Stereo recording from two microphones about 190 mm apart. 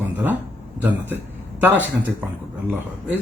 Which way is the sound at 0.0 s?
10° right (ahead or behind).